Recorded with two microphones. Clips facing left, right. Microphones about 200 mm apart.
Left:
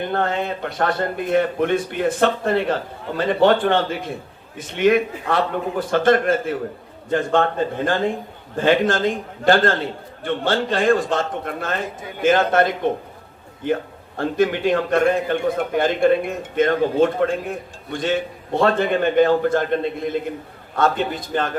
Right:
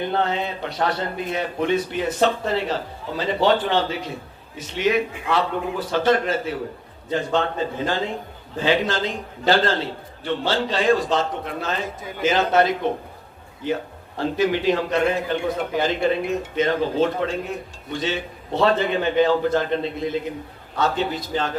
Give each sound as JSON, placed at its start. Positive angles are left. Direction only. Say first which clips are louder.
{"t": 0.0, "sound": "a man's voice", "louder": "left 1 dB", "side_deg": 50}